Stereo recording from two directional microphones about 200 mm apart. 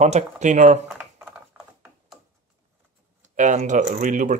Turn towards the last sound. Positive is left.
turn(degrees=-40)  # may be behind; listen again after turning